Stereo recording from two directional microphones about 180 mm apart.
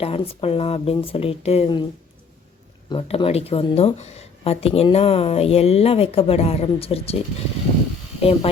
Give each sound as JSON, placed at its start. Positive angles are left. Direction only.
{"t": 0.0, "sound": "speech", "side_deg": 35}
{"t": 2.9, "sound": "speech", "side_deg": 30}
{"t": 8.2, "sound": "speech", "side_deg": 35}